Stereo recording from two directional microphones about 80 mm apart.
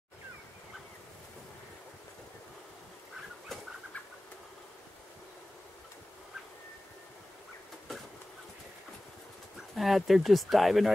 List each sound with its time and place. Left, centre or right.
9.8 s speech: centre